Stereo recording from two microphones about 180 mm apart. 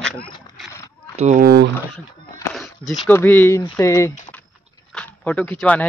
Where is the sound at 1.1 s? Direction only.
40° right (ahead or behind).